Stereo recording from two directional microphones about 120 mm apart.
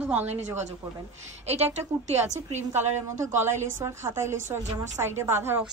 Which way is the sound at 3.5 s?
20° right (ahead or behind).